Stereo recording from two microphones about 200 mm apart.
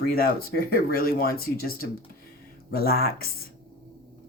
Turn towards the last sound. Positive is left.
turn(degrees=50)  # may be behind; listen again after turning